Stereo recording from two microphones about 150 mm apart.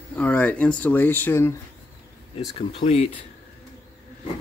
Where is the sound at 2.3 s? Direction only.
40° left (ahead or behind).